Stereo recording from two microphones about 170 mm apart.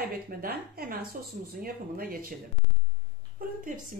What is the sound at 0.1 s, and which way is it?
Speech, 60° right (ahead or behind).